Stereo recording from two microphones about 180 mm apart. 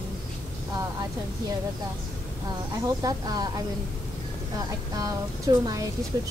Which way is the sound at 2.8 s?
20° right (ahead or behind).